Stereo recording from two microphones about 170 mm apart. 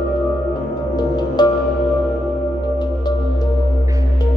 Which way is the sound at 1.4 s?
25° left (ahead or behind).